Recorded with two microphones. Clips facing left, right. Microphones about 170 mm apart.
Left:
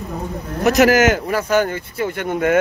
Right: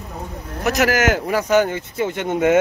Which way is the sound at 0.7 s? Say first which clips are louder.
Left 5 dB; 20° left (ahead or behind).